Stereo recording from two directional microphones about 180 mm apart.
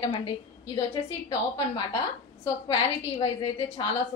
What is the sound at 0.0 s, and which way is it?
Speech, 25° left (ahead or behind).